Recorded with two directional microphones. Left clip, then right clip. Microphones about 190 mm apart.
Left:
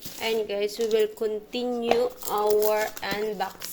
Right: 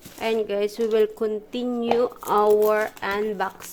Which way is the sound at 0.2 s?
35° right (ahead or behind).